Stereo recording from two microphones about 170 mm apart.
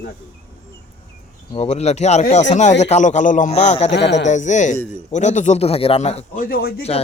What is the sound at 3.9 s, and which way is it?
Speech, 90° left.